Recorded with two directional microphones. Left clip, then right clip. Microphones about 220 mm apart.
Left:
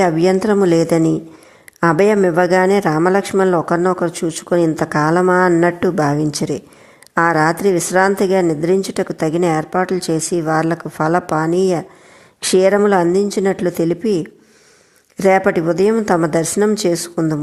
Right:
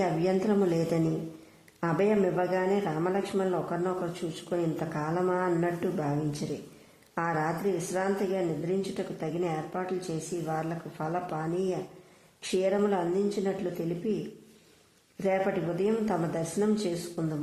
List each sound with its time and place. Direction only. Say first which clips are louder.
0.0 s a man's voice: left 14 dB; 35° left (ahead or behind)
15.2 s a man's voice: left 15 dB; 40° left (ahead or behind)